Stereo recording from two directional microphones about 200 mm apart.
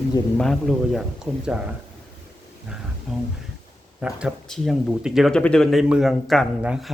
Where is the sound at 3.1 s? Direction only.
Centre (ahead or behind).